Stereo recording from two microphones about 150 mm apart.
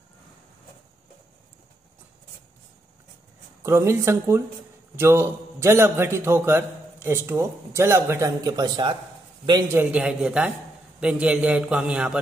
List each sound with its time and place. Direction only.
3.6 s a man's voice: 20° right (ahead or behind)
9.7 s a man's voice: 10° right (ahead or behind)